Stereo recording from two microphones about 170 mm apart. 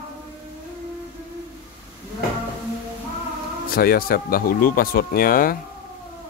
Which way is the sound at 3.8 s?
60° left (ahead or behind).